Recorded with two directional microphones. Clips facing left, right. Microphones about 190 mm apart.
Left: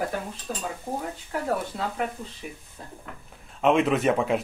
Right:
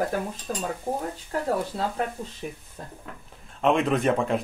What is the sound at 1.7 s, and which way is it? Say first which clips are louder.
Speech: right 2 dB; 35° right (ahead or behind).